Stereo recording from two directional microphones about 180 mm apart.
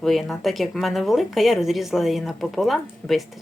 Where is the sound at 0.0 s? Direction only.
Centre (ahead or behind).